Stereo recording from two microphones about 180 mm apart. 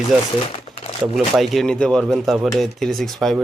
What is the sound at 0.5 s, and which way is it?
Crumpling, 35° left (ahead or behind).